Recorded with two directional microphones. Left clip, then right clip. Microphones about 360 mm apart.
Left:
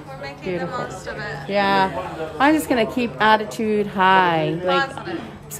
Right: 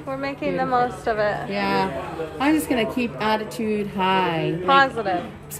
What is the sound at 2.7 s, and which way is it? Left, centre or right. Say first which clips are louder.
A woman's voice: left 3 dB; left.